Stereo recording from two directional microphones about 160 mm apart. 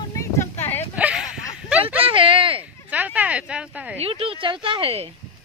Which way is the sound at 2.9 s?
10° right (ahead or behind).